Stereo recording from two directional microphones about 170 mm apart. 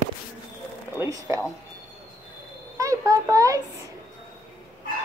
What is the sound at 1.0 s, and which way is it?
Speech, 20° right (ahead or behind).